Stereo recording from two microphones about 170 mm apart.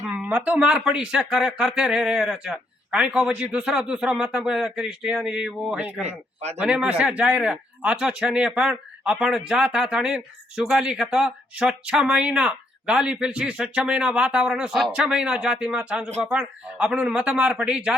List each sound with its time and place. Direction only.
0.0 s speech: 5° right (ahead or behind)
6.0 s a man's voice: 40° right (ahead or behind)
6.6 s speech: 5° right (ahead or behind)